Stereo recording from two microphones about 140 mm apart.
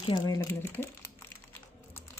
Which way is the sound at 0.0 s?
30° left (ahead or behind).